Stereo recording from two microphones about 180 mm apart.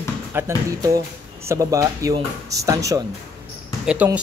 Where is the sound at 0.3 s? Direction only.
15° right (ahead or behind).